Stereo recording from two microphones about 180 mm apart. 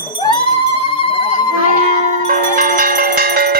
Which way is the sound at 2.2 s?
50° right (ahead or behind).